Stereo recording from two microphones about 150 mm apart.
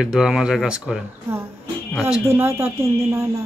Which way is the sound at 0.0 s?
5° right (ahead or behind).